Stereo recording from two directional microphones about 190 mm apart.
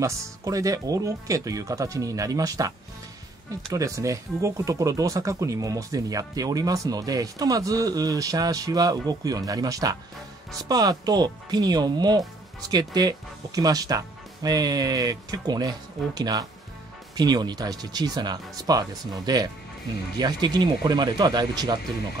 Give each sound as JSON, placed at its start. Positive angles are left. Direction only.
{"t": 0.0, "sound": "speech", "side_deg": -15}
{"t": 3.7, "sound": "speech", "side_deg": -15}